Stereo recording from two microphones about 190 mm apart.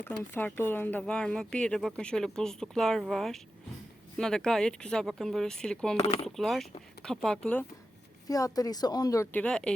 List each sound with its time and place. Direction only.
0.0 s speech: 10° left (ahead or behind)
6.0 s speech: 35° left (ahead or behind)
6.2 s speech: centre (ahead or behind)
8.3 s speech: 20° left (ahead or behind)